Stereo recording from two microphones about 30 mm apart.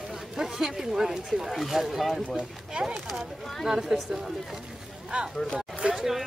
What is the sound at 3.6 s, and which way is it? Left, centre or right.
Speech, centre.